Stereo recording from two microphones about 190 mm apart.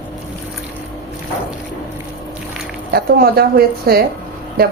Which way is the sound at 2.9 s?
55° right (ahead or behind).